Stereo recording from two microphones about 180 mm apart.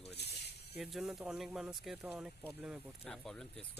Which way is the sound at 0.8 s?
Centre (ahead or behind).